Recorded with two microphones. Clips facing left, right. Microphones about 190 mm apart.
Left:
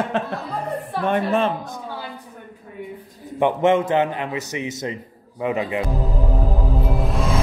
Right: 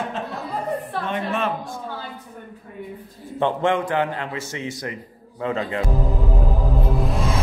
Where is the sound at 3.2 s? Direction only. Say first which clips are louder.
Left 3 dB; 15° left (ahead or behind).